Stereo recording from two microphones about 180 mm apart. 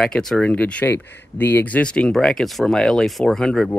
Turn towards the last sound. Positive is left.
turn(degrees=5)  # may be behind; listen again after turning